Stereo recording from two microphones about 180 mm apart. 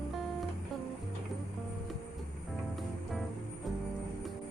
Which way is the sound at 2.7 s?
Centre (ahead or behind).